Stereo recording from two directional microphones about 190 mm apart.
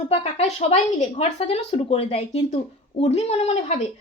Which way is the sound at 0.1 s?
35° left (ahead or behind).